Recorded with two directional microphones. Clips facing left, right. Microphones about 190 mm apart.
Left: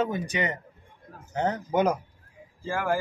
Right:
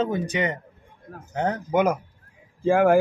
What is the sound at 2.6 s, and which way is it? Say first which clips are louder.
Speech: right 10 dB; 60° right (ahead or behind).